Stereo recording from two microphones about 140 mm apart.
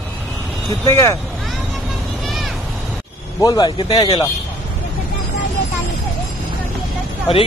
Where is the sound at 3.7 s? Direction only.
40° left (ahead or behind).